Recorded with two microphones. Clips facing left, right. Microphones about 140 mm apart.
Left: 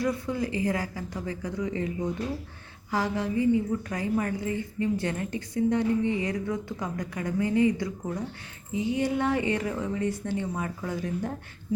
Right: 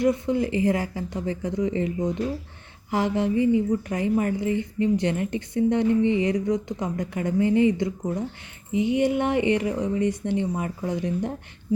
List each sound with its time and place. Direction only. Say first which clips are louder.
0.0 s speech: right 6 dB; 25° right (ahead or behind)